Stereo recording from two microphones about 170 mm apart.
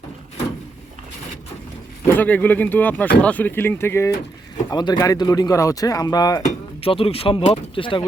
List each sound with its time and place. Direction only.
2.0 s speech: 10° left (ahead or behind)
6.4 s speech: 35° left (ahead or behind)